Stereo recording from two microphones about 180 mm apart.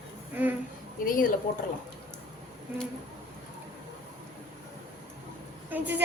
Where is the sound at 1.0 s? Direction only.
50° left (ahead or behind).